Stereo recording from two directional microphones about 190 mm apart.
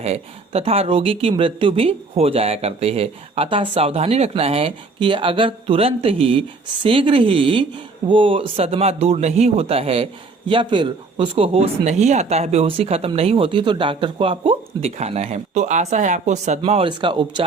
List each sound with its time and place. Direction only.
0.0 s a man's voice: 30° right (ahead or behind)